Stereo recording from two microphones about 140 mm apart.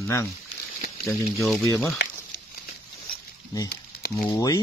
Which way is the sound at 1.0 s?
5° left (ahead or behind).